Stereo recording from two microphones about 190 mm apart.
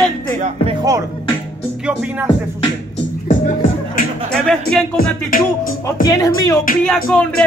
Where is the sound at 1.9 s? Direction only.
5° right (ahead or behind).